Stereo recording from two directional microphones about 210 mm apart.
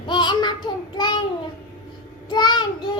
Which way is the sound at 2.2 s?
20° left (ahead or behind).